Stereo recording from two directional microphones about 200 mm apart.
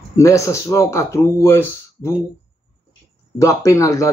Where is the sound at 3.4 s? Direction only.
15° left (ahead or behind).